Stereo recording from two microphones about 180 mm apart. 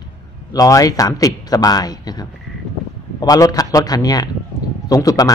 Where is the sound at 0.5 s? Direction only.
20° left (ahead or behind).